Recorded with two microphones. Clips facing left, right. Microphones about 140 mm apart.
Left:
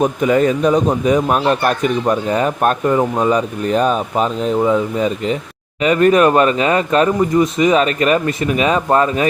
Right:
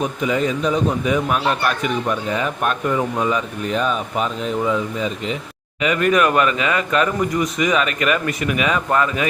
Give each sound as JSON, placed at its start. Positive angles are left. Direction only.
{"t": 0.0, "sound": "a man's voice", "side_deg": 50}